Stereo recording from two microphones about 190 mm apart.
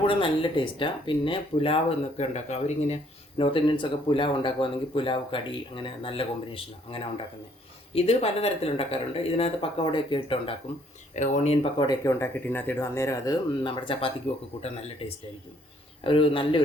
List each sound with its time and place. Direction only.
0.1 s speech: 25° left (ahead or behind)
11.1 s speech: 40° left (ahead or behind)